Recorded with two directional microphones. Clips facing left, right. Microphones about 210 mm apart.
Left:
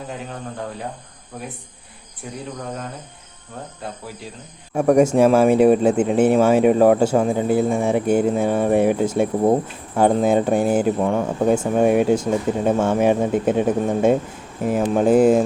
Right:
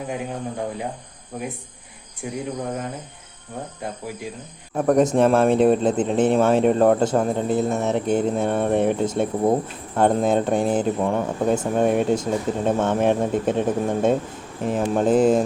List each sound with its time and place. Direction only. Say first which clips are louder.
0.1 s speech: right 5 dB; 15° right (ahead or behind)
2.2 s speech: right 4 dB; 15° right (ahead or behind)
4.7 s speech: left 3 dB; 10° left (ahead or behind)